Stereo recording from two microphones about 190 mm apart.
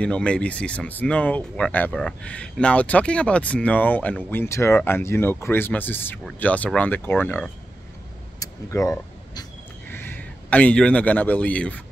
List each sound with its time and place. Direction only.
0.0 s a man's voice: 5° left (ahead or behind)